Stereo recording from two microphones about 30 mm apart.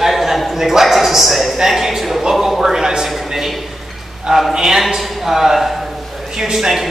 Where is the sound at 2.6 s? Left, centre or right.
Centre.